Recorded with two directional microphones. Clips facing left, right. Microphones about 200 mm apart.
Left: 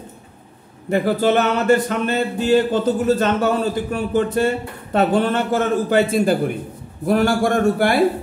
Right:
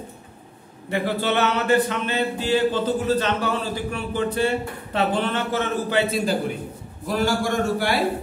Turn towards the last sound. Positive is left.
turn(degrees=55)  # may be behind; listen again after turning